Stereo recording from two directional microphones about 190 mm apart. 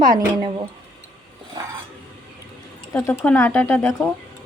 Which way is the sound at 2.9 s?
10° left (ahead or behind).